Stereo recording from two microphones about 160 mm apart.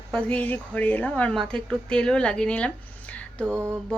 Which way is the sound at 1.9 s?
5° left (ahead or behind).